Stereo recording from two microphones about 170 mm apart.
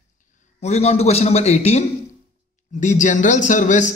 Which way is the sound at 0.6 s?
40° left (ahead or behind).